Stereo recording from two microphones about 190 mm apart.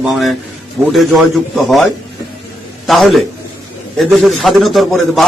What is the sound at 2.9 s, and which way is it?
A man's voice, centre (ahead or behind).